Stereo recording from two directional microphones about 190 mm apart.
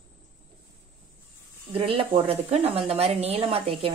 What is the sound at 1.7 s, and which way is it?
A woman's voice, 25° right (ahead or behind).